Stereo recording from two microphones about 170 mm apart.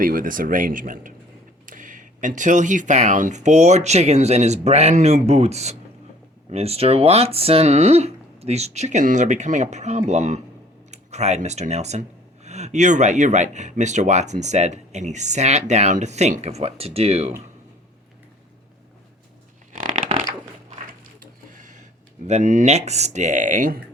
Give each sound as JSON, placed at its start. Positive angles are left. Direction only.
{"t": 0.0, "sound": "speech", "side_deg": -55}
{"t": 19.7, "sound": "a sound", "side_deg": -50}
{"t": 22.3, "sound": "speech", "side_deg": -45}